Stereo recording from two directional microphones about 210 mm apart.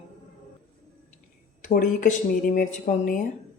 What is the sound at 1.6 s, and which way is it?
A woman's voice, 35° left (ahead or behind).